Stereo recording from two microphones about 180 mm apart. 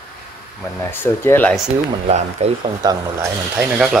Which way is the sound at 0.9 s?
10° left (ahead or behind).